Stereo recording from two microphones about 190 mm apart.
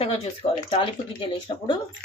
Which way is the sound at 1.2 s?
25° left (ahead or behind).